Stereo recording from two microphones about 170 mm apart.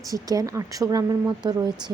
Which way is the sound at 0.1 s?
20° right (ahead or behind).